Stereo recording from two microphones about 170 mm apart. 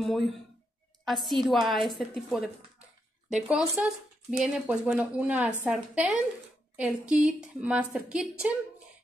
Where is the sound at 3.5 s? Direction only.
5° right (ahead or behind).